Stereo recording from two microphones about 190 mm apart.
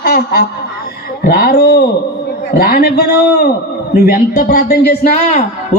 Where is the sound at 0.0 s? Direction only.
55° left (ahead or behind).